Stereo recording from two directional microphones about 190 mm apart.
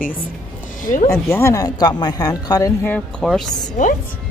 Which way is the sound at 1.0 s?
15° left (ahead or behind).